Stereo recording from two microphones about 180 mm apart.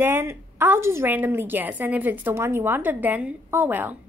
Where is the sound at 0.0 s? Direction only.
10° right (ahead or behind).